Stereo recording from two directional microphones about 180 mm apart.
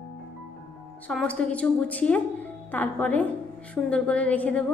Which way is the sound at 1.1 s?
5° left (ahead or behind).